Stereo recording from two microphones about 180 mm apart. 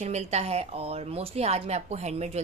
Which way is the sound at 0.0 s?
40° right (ahead or behind).